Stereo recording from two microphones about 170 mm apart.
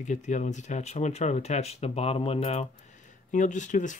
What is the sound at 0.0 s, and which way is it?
Speech, 45° left (ahead or behind).